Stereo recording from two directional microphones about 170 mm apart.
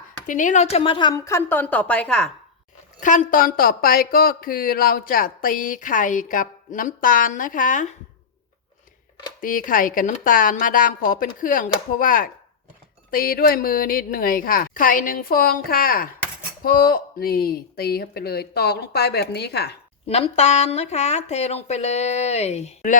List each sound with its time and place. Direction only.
0.3 s a woman's voice: 50° left (ahead or behind); by 2.3 s 5° left (ahead or behind)
3.0 s a woman's voice: 50° left (ahead or behind)
9.4 s a woman's voice: 55° left (ahead or behind); by 19.7 s 70° left (ahead or behind)
20.1 s speech: 35° left (ahead or behind)